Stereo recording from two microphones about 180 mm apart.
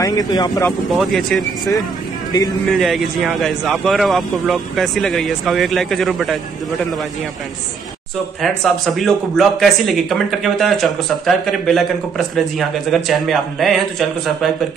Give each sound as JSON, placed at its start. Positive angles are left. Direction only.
{"t": 0.0, "sound": "speech", "side_deg": 20}
{"t": 0.7, "sound": "speech", "side_deg": 0}
{"t": 2.7, "sound": "speech", "side_deg": 0}
{"t": 8.4, "sound": "speech", "side_deg": 0}